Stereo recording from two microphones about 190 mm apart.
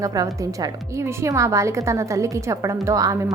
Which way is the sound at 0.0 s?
20° right (ahead or behind).